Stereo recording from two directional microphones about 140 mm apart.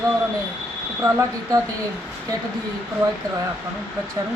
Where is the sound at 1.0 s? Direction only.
20° right (ahead or behind).